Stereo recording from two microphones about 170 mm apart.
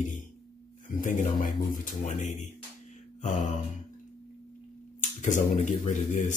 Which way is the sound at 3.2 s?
50° left (ahead or behind).